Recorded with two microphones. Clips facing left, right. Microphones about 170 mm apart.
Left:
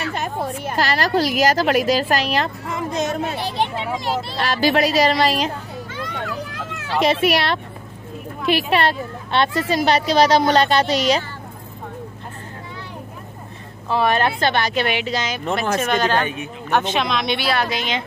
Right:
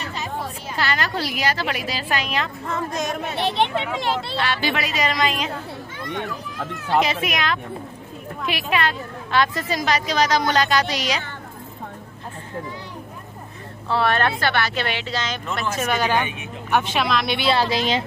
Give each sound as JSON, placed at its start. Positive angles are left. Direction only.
{"t": 0.0, "sound": "a sound", "side_deg": 55}
{"t": 0.7, "sound": "a woman's voice", "side_deg": 40}
{"t": 2.6, "sound": "a woman's voice", "side_deg": 15}
{"t": 4.4, "sound": "a woman's voice", "side_deg": 40}
{"t": 5.9, "sound": "children playing", "side_deg": 90}
{"t": 7.0, "sound": "a woman's voice", "side_deg": 35}
{"t": 13.8, "sound": "speech", "side_deg": 15}
{"t": 15.8, "sound": "speech", "side_deg": -10}
{"t": 17.4, "sound": "a woman's voice", "side_deg": -25}